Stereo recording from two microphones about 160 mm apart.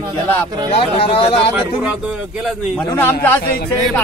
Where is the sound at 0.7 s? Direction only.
35° left (ahead or behind).